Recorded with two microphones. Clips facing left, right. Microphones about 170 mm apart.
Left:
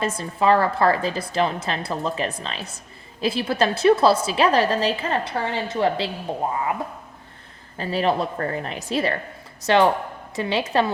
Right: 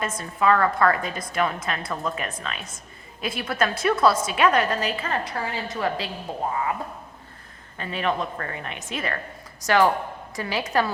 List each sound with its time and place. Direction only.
0.0 s a woman's voice: 30° left (ahead or behind)
7.8 s a woman's voice: 35° left (ahead or behind)